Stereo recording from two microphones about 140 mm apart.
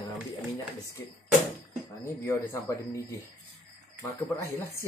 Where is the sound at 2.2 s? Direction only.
20° left (ahead or behind).